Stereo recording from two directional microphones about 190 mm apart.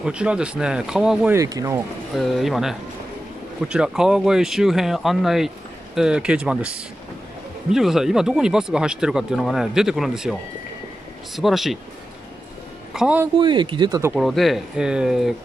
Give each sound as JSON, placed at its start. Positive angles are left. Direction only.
{"t": 0.0, "sound": "speech", "side_deg": -5}
{"t": 1.3, "sound": "speech", "side_deg": -20}
{"t": 2.1, "sound": "speech", "side_deg": 0}
{"t": 11.3, "sound": "speech", "side_deg": 0}
{"t": 12.9, "sound": "a man's voice", "side_deg": -5}
{"t": 13.4, "sound": "speech", "side_deg": -25}
{"t": 14.1, "sound": "speech", "side_deg": 0}